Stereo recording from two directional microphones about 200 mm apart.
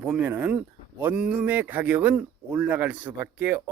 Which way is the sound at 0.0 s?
5° right (ahead or behind).